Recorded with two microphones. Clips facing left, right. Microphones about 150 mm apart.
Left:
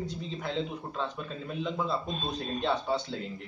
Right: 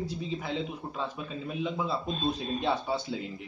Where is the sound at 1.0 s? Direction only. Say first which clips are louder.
Even; 5° right (ahead or behind).